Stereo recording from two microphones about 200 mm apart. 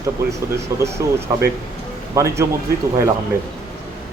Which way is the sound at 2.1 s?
15° right (ahead or behind).